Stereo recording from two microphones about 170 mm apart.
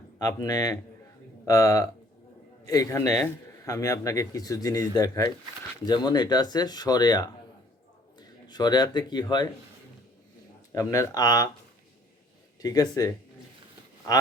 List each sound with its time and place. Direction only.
0.2 s speech: 20° left (ahead or behind)
8.4 s speech: 25° left (ahead or behind)
10.7 s speech: 15° left (ahead or behind)
12.6 s speech: 25° left (ahead or behind)